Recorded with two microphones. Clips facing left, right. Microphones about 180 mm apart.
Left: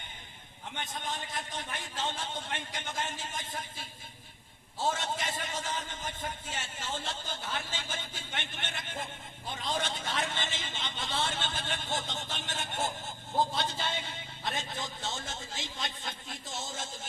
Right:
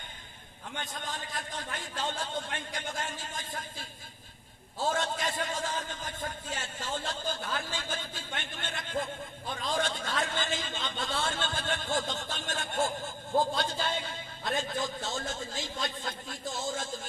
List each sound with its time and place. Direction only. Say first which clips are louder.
0.8 s a man's voice: left 1 dB; 20° left (ahead or behind)
4.9 s a man's voice: right 4 dB; 20° left (ahead or behind)